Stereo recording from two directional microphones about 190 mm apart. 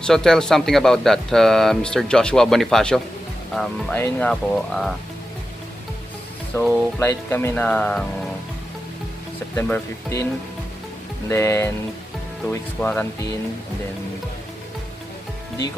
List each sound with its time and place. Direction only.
0.0 s speech: 5° left (ahead or behind)
6.5 s speech: 15° left (ahead or behind)
9.6 s speech: 15° left (ahead or behind)
11.2 s speech: 15° left (ahead or behind)